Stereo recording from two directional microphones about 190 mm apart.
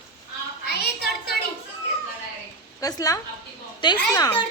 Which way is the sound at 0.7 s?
55° left (ahead or behind).